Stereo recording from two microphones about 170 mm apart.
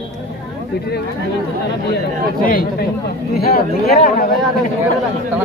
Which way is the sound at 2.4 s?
55° left (ahead or behind).